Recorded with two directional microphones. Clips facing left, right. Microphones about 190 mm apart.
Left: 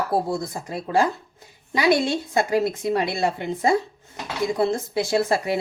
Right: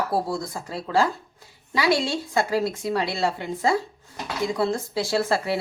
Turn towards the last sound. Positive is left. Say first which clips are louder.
# left 2 dB
turn(degrees=15)  # may be behind; listen again after turning